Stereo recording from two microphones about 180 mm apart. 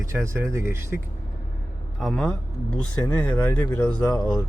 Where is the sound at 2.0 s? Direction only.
5° left (ahead or behind).